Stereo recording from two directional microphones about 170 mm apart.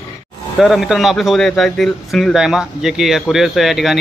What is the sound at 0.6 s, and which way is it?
Speech, centre (ahead or behind).